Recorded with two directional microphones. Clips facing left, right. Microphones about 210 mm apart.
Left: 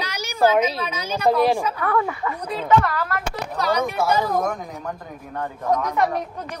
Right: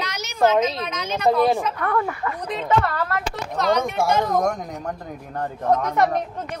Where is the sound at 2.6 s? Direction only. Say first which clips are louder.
Left 2 dB; 30° right (ahead or behind).